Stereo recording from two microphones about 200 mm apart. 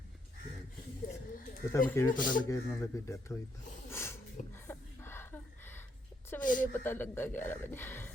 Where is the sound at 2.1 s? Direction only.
40° left (ahead or behind).